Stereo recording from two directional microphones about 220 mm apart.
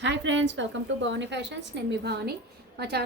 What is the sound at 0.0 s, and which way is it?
A woman's voice, 55° right (ahead or behind).